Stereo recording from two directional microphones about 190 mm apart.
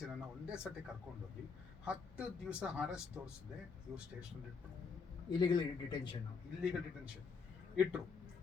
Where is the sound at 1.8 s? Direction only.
5° right (ahead or behind).